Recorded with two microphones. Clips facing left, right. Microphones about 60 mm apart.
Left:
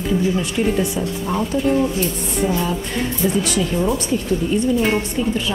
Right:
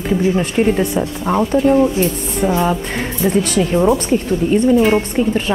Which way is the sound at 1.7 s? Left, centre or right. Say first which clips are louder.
Right 4 dB; right.